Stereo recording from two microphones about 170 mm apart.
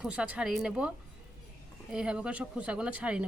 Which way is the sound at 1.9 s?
5° right (ahead or behind).